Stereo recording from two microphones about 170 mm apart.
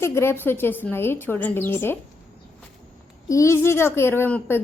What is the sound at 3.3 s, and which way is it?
A woman's voice, 15° left (ahead or behind).